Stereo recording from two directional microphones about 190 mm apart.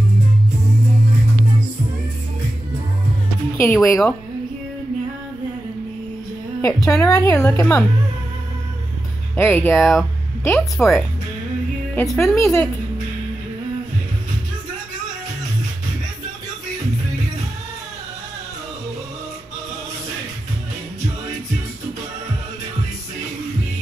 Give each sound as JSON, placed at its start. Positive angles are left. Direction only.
{"t": 3.6, "sound": "speech", "side_deg": 5}
{"t": 6.6, "sound": "a woman's voice", "side_deg": 15}
{"t": 9.4, "sound": "a woman's voice", "side_deg": 10}